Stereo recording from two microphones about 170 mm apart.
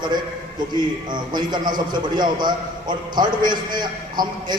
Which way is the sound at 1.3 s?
25° right (ahead or behind).